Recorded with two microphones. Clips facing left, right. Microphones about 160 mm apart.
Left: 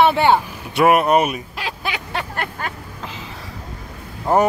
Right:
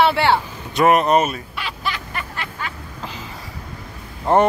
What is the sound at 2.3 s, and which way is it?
Vehicle, 50° left (ahead or behind).